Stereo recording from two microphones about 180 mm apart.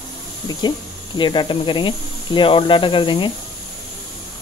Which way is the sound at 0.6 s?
25° left (ahead or behind).